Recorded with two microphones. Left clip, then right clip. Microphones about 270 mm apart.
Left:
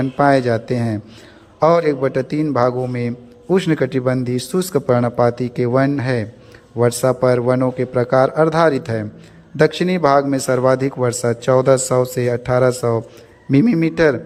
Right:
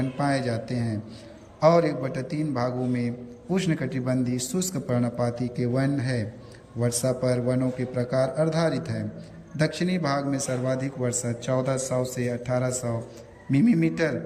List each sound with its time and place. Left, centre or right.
0.2 s a man's voice: centre